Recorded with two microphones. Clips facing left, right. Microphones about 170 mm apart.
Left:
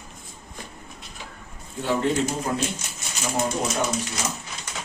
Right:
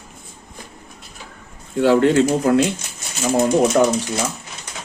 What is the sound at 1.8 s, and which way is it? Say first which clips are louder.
Speech: right 10 dB; 85° right.